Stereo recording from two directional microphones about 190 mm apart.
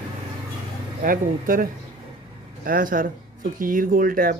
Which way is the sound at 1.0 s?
45° right (ahead or behind).